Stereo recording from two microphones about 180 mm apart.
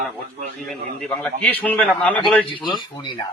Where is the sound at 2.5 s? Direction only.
25° left (ahead or behind).